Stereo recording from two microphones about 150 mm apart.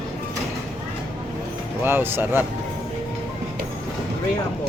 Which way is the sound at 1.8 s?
15° right (ahead or behind).